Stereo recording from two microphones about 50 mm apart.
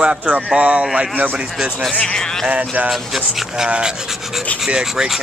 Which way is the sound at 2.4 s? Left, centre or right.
Right.